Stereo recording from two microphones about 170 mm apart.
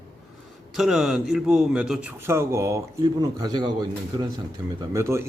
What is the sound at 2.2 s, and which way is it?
A man's voice, 15° right (ahead or behind).